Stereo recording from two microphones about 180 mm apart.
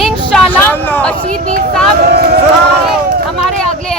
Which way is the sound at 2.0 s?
55° right (ahead or behind).